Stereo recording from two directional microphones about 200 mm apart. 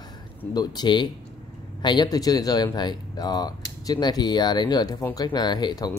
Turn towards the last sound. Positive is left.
turn(degrees=20)  # may be behind; listen again after turning